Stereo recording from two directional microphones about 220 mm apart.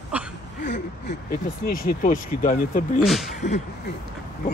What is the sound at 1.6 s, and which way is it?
Speech, 40° left (ahead or behind).